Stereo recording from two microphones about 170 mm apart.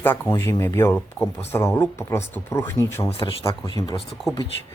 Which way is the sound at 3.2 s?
30° left (ahead or behind).